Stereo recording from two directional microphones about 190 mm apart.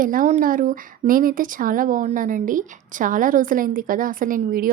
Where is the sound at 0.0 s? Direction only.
45° right (ahead or behind).